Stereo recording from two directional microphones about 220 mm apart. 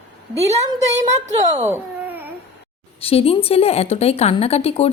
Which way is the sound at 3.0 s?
25° left (ahead or behind).